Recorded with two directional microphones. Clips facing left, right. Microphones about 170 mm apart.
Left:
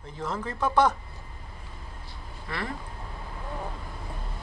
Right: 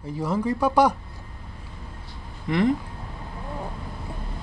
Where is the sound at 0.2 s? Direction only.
10° right (ahead or behind).